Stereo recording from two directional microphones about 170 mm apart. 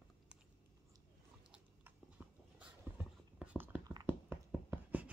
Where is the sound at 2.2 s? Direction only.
10° right (ahead or behind).